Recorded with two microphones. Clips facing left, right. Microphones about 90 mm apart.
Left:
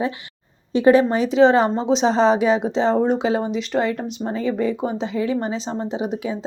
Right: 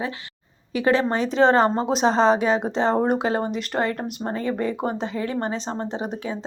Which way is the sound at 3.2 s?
45° right (ahead or behind).